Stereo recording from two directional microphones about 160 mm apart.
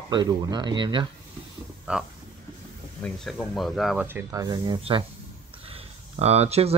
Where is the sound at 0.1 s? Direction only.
25° right (ahead or behind).